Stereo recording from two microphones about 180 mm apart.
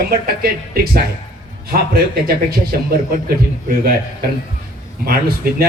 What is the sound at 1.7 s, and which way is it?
A man's voice, 55° right (ahead or behind).